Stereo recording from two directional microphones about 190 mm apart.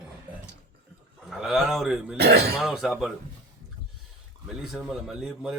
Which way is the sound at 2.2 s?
60° right (ahead or behind).